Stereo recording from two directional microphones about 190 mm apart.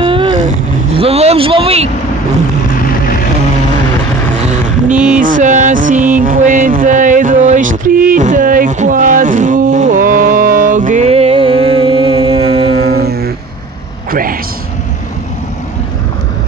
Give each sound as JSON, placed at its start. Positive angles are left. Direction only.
{"t": 0.9, "sound": "vehicle", "side_deg": -30}
{"t": 2.7, "sound": "vehicle", "side_deg": 50}
{"t": 4.9, "sound": "a sound", "side_deg": -5}
{"t": 5.2, "sound": "music", "side_deg": -45}
{"t": 12.7, "sound": "music", "side_deg": -55}